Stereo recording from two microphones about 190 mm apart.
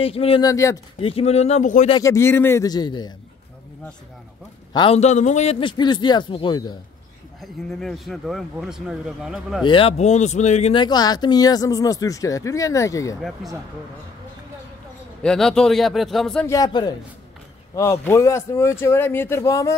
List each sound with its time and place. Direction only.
0.0 s speech: 30° left (ahead or behind)
0.4 s speech: 15° left (ahead or behind)
1.0 s speech: 30° left (ahead or behind)
2.0 s speech: 15° left (ahead or behind)
4.7 s speech: 30° left (ahead or behind)
7.3 s speech: centre (ahead or behind)
9.7 s speech: 30° left (ahead or behind)
13.4 s speech: centre (ahead or behind)
15.2 s speech: 5° left (ahead or behind)
16.4 s speech: 20° left (ahead or behind)
18.0 s speech: 15° left (ahead or behind)